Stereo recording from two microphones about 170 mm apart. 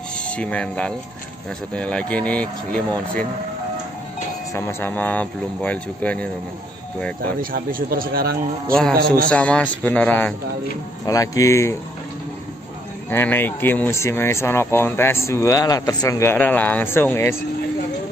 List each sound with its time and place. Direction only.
0.4 s speech: 5° left (ahead or behind)
4.6 s speech: 15° left (ahead or behind)
7.5 s speech: 60° right (ahead or behind)
9.3 s speech: 5° left (ahead or behind)
11.1 s speech: 20° left (ahead or behind)
13.1 s speech: 10° left (ahead or behind)